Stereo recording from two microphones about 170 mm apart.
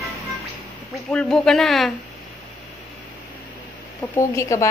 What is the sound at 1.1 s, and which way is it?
Speech, 5° left (ahead or behind).